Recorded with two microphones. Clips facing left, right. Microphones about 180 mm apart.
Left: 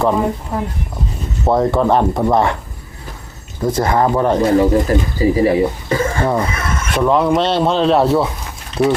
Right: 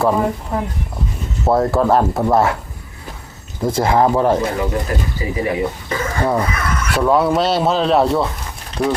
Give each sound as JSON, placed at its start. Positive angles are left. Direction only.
{"t": 0.0, "sound": "speech", "side_deg": 0}
{"t": 1.5, "sound": "speech", "side_deg": -5}
{"t": 3.6, "sound": "speech", "side_deg": -10}
{"t": 4.5, "sound": "speech", "side_deg": 35}
{"t": 6.4, "sound": "a sound", "side_deg": 25}
{"t": 7.0, "sound": "speech", "side_deg": -5}